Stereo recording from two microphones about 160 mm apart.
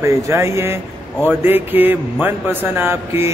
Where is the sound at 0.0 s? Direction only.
15° right (ahead or behind).